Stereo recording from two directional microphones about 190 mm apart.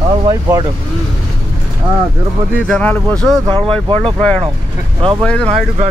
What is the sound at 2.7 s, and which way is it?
Speech, 5° left (ahead or behind).